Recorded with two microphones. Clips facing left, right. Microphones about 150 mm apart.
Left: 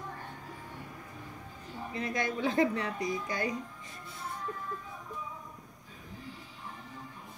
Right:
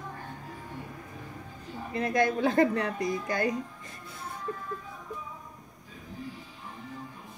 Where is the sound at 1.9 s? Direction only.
55° right (ahead or behind).